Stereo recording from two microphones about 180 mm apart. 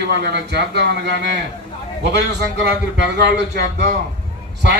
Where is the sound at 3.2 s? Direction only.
65° right (ahead or behind).